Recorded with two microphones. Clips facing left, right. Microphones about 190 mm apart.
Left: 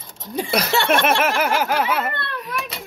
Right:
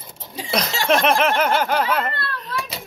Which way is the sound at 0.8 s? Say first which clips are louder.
Right 4 dB; 5° left (ahead or behind).